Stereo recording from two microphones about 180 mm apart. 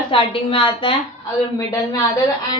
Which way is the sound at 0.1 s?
30° left (ahead or behind).